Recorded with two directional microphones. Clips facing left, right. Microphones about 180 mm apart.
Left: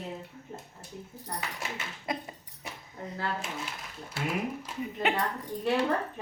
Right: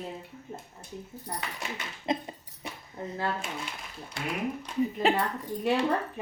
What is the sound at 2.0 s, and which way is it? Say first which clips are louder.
Speech: right 5 dB; 25° right (ahead or behind).